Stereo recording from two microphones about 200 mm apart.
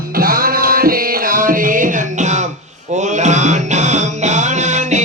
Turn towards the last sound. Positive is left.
turn(degrees=-35)  # may be behind; listen again after turning